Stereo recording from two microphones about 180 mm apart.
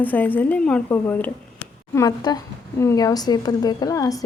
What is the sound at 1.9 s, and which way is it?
A woman's voice, 20° left (ahead or behind).